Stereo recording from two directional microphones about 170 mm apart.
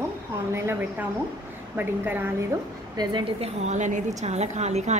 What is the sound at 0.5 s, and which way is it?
A woman's voice, 15° right (ahead or behind).